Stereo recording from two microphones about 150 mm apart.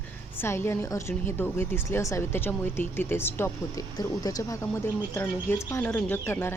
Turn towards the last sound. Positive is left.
turn(degrees=15)  # may be behind; listen again after turning